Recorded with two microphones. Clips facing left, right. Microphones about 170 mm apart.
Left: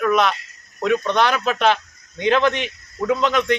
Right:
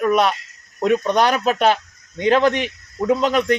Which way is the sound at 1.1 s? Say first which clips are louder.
Right 2 dB; 40° right (ahead or behind).